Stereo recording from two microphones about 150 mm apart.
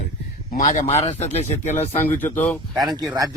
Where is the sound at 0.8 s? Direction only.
45° left (ahead or behind).